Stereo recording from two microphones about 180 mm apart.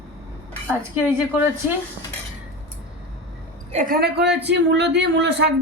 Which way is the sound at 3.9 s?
65° right (ahead or behind).